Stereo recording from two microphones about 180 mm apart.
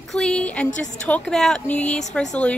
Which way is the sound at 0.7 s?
45° left (ahead or behind).